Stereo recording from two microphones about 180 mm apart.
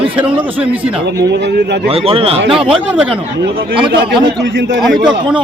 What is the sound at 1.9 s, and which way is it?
Speech, 30° right (ahead or behind).